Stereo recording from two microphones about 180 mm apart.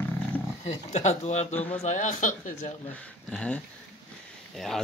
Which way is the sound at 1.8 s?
45° left (ahead or behind).